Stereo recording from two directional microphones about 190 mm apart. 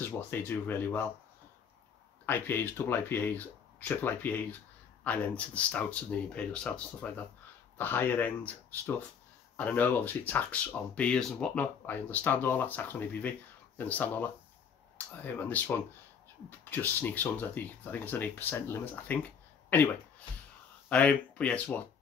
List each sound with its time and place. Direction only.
0.0 s speech: 10° left (ahead or behind)
2.2 s speech: 10° left (ahead or behind)